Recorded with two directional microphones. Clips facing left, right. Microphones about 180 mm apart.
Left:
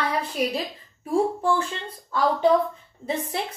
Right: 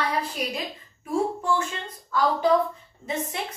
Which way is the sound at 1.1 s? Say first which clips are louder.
Left 3 dB; 30° left (ahead or behind).